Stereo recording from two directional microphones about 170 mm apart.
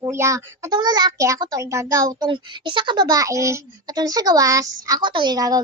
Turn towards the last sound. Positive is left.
turn(degrees=-20)  # may be behind; listen again after turning